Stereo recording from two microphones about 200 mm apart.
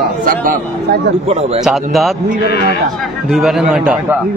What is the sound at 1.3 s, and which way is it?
Speech, 30° right (ahead or behind).